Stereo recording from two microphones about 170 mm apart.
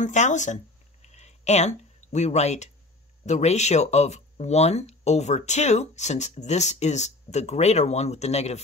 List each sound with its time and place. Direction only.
0.0 s speech: 45° left (ahead or behind)
1.0 s a sound: 40° left (ahead or behind)
3.3 s speech: 40° left (ahead or behind)